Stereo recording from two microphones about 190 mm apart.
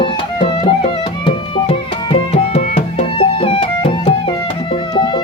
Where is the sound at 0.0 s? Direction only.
25° left (ahead or behind).